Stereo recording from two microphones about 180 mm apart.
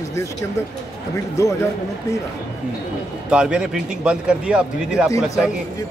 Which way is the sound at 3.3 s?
5° right (ahead or behind).